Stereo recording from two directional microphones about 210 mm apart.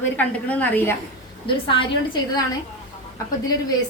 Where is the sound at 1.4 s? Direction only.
25° left (ahead or behind).